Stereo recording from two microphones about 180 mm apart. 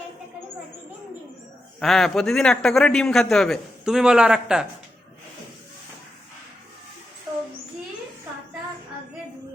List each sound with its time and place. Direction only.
1.8 s a man's voice: centre (ahead or behind)
7.3 s child singing: 20° right (ahead or behind)